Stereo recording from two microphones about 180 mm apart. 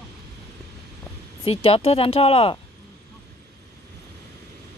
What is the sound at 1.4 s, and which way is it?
Speech, 30° left (ahead or behind).